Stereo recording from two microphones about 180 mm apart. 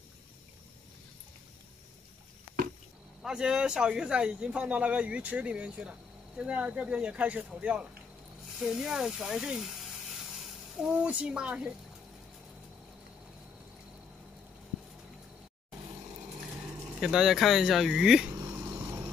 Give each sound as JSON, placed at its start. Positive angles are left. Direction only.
{"t": 3.2, "sound": "speech", "side_deg": -5}
{"t": 16.3, "sound": "speech", "side_deg": -5}
{"t": 18.5, "sound": "a sound", "side_deg": -15}